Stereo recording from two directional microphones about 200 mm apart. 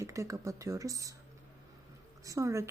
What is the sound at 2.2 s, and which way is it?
Speech, 15° right (ahead or behind).